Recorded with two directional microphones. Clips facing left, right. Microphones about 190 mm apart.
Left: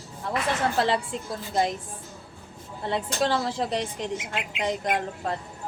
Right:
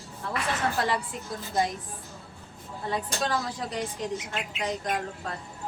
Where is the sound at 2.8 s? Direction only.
25° left (ahead or behind).